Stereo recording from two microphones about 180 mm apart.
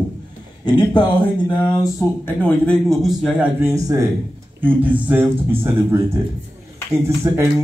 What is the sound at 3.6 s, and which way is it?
Speech, 15° right (ahead or behind).